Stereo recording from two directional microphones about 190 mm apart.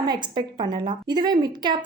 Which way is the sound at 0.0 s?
25° right (ahead or behind).